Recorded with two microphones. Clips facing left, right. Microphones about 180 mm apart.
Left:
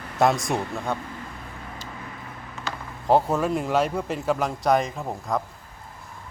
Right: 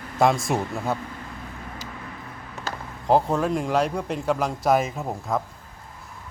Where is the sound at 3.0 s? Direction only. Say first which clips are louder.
Even; centre (ahead or behind).